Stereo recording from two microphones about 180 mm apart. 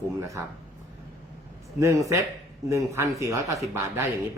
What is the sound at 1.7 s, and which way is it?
Speech, 15° right (ahead or behind).